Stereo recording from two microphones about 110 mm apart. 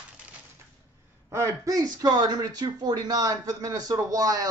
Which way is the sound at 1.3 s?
30° right (ahead or behind).